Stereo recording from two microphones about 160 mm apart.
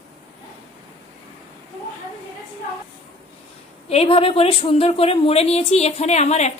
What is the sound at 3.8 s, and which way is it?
Speech, 40° left (ahead or behind).